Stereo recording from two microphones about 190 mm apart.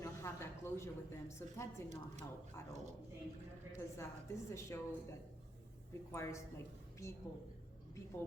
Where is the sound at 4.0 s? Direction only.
15° left (ahead or behind).